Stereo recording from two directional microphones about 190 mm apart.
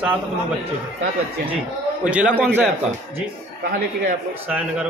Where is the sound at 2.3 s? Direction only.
10° left (ahead or behind).